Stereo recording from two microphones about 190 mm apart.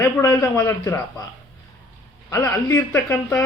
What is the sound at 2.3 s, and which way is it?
A man's voice, 15° left (ahead or behind).